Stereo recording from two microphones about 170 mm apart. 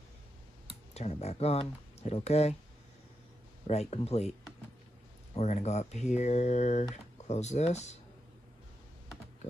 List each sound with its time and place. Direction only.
0.9 s speech: 40° left (ahead or behind)
3.9 s speech: 40° left (ahead or behind)
5.3 s speech: 40° left (ahead or behind)